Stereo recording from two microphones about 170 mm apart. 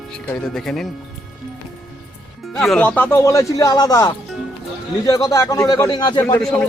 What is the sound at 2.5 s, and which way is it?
A man's voice, centre (ahead or behind).